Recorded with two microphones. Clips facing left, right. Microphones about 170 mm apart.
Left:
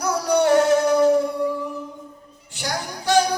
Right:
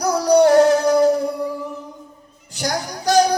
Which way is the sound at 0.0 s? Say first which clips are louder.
Right 5 dB; 35° right (ahead or behind).